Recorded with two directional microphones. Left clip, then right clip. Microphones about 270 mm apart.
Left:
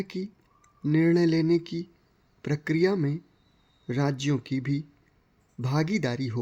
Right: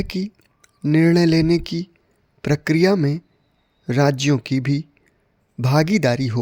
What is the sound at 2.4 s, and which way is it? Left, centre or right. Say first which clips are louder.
Speech: right 8 dB; right.